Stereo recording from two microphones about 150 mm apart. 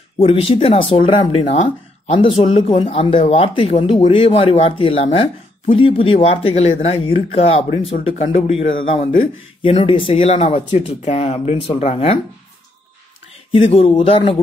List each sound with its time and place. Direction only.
0.2 s speech: 35° left (ahead or behind)
13.5 s speech: 40° left (ahead or behind)